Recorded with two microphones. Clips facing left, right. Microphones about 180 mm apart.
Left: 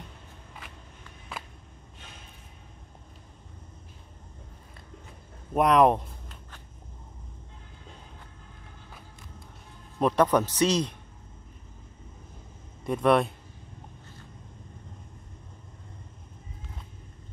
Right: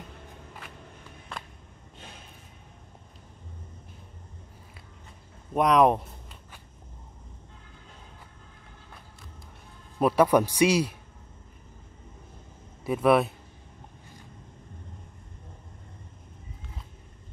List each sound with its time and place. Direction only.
1.3 s a sound: 5° left (ahead or behind)
5.5 s speech: centre (ahead or behind)
9.9 s a man's voice: 10° right (ahead or behind)
12.8 s speech: 5° right (ahead or behind)